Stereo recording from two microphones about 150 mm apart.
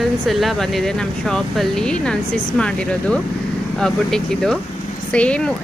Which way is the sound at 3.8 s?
5° left (ahead or behind).